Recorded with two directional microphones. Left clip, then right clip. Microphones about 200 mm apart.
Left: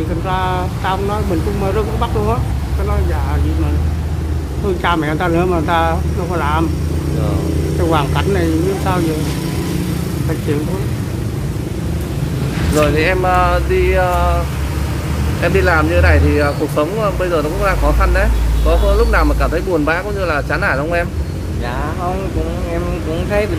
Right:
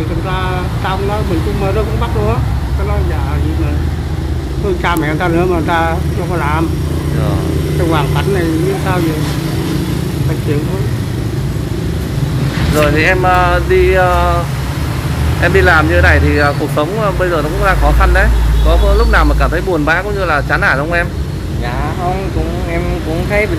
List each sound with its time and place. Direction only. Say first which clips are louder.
0.3 s vehicle: left 2 dB; 25° left (ahead or behind)
4.8 s speech: right 1 dB; 15° left (ahead or behind)
7.9 s speech: right 1 dB; 20° left (ahead or behind)
12.7 s speech: right 3 dB; 5° left (ahead or behind)
15.4 s speech: right 4 dB; 5° left (ahead or behind)